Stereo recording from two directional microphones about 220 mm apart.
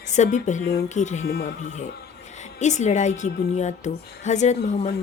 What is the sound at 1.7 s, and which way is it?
Speech, 35° left (ahead or behind).